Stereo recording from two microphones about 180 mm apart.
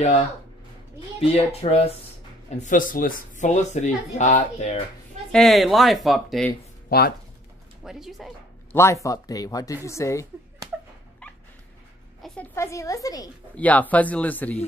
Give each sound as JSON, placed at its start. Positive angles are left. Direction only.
{"t": 1.3, "sound": "speech", "side_deg": 35}
{"t": 2.6, "sound": "speech", "side_deg": 50}
{"t": 5.3, "sound": "speech", "side_deg": 0}
{"t": 6.9, "sound": "speech", "side_deg": 60}
{"t": 7.8, "sound": "speech", "side_deg": 0}
{"t": 8.7, "sound": "speech", "side_deg": 15}
{"t": 12.5, "sound": "speech", "side_deg": 15}
{"t": 13.6, "sound": "speech", "side_deg": 10}